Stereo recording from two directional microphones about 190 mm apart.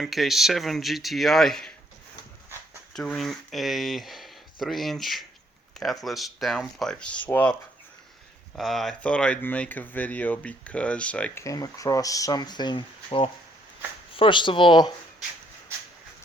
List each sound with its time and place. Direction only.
0.0 s speech: centre (ahead or behind)
2.9 s speech: 5° left (ahead or behind)
8.5 s speech: centre (ahead or behind); by 14.9 s 25° left (ahead or behind)